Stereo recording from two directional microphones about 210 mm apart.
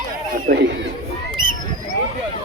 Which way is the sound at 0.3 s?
40° right (ahead or behind).